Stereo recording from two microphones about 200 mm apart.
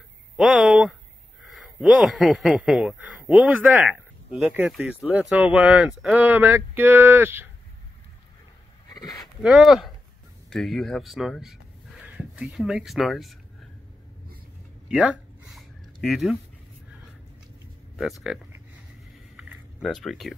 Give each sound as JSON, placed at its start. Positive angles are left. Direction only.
{"t": 0.4, "sound": "speech", "side_deg": 0}
{"t": 8.8, "sound": "a sound", "side_deg": 20}
{"t": 9.1, "sound": "speech", "side_deg": 0}
{"t": 14.9, "sound": "a sound", "side_deg": -5}
{"t": 18.3, "sound": "speech", "side_deg": -5}
{"t": 19.8, "sound": "speech", "side_deg": 5}